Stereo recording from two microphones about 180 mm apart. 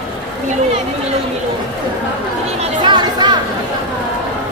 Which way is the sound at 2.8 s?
25° right (ahead or behind).